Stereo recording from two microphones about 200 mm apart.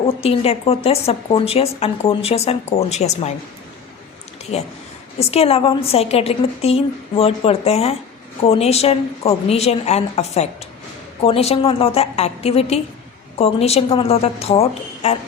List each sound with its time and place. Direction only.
0.2 s a woman's voice: 30° left (ahead or behind)
4.5 s a woman's voice: 30° left (ahead or behind)